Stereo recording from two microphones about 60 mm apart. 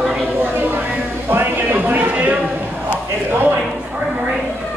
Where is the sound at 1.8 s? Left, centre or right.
Right.